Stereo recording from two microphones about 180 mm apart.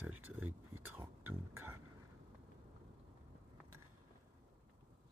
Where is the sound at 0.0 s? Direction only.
10° right (ahead or behind).